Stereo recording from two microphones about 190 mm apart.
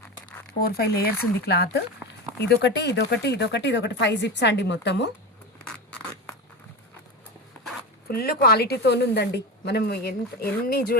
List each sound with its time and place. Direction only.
0.3 s crumpling: 5° left (ahead or behind)
0.6 s speech: 55° left (ahead or behind)
8.0 s speech: 50° left (ahead or behind)